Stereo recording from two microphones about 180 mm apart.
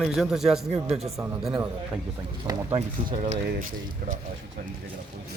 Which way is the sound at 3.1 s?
40° right (ahead or behind).